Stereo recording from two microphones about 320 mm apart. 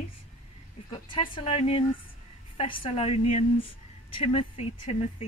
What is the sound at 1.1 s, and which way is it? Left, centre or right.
Speech, centre.